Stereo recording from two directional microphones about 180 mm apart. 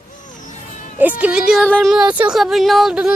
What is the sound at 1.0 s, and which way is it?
Speech, 10° right (ahead or behind).